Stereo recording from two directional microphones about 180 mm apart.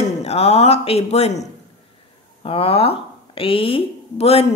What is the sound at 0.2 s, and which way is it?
Speech, 35° left (ahead or behind).